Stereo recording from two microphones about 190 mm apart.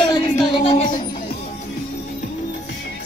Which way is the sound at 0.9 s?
50° left (ahead or behind).